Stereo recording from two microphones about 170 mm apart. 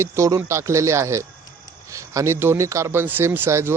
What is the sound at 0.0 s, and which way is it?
Speech, 15° right (ahead or behind).